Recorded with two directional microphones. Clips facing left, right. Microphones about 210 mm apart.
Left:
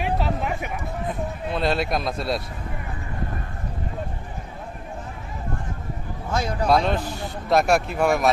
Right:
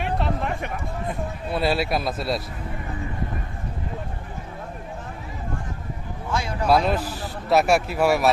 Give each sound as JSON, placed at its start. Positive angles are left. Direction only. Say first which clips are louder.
{"t": 0.0, "sound": "a sound", "louder": "left 1 dB", "side_deg": 0}
{"t": 1.5, "sound": "speech", "louder": "right 1 dB", "side_deg": -5}
{"t": 6.3, "sound": "speech", "louder": "left 2 dB", "side_deg": 40}
{"t": 6.7, "sound": "speech", "louder": "right 2 dB", "side_deg": -5}